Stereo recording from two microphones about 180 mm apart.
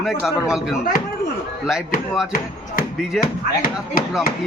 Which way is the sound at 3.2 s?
55° left (ahead or behind).